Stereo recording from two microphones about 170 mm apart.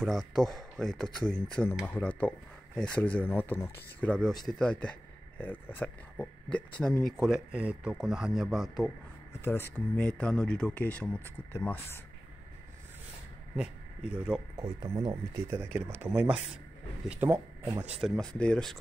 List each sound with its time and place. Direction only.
0.0 s speech: centre (ahead or behind)
9.4 s speech: 15° left (ahead or behind)
13.6 s speech: 5° right (ahead or behind)
14.6 s speech: 25° right (ahead or behind)
15.5 s speech: 15° right (ahead or behind)
17.3 s speech: 15° right (ahead or behind)
18.0 s speech: centre (ahead or behind)